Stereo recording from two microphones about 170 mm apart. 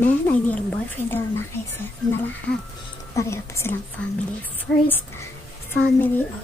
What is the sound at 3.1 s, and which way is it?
A woman's voice, 15° left (ahead or behind).